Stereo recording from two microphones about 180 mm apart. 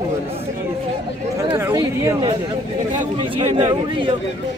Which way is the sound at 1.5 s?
15° right (ahead or behind).